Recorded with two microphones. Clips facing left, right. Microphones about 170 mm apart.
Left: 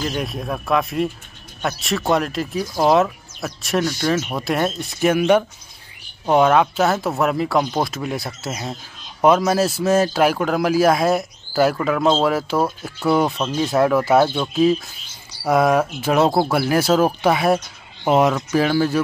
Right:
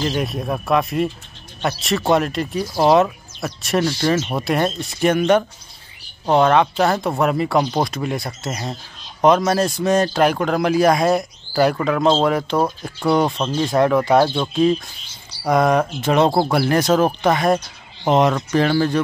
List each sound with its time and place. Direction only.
0.1 s speech: centre (ahead or behind)